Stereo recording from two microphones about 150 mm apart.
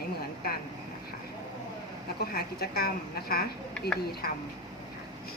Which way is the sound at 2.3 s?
90° left.